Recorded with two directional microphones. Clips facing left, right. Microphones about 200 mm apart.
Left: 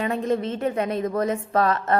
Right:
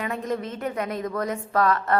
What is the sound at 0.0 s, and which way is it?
A woman's voice, 30° left (ahead or behind).